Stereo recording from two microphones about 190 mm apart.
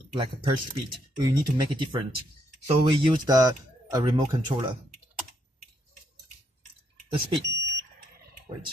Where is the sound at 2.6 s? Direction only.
20° right (ahead or behind).